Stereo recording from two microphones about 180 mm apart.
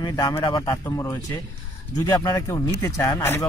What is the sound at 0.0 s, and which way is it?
Speech, 20° left (ahead or behind).